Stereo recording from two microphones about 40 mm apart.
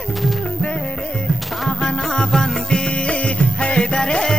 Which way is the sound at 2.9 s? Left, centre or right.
Left.